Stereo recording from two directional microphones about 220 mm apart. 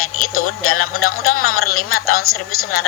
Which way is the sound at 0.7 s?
75° left (ahead or behind).